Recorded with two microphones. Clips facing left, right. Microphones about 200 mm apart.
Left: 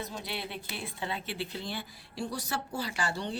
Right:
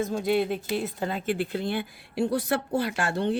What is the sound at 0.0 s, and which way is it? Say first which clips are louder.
Speech: right 14 dB; 50° right (ahead or behind).